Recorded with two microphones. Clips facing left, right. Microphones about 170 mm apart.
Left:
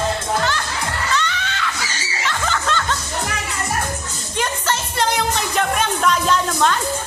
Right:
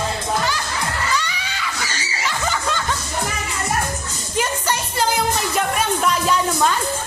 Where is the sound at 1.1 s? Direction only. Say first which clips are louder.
Left 2 dB; 10° right (ahead or behind).